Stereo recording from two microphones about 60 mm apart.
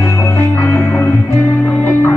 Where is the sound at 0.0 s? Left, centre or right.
Left.